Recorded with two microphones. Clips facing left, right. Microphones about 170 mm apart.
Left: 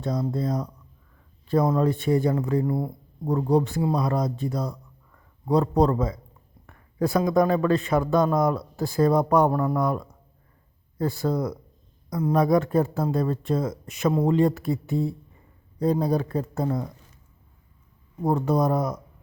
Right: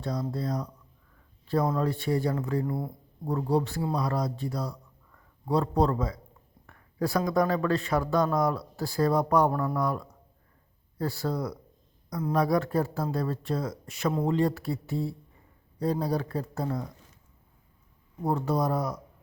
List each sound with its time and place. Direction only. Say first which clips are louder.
0.0 s a man's voice: left 5 dB; 20° left (ahead or behind)
18.3 s a man's voice: left 5 dB; 20° left (ahead or behind)